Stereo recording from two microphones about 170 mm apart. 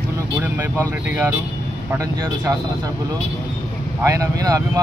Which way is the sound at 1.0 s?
10° right (ahead or behind).